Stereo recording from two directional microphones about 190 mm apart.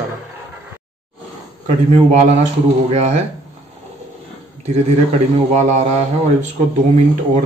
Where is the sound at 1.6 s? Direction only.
35° right (ahead or behind).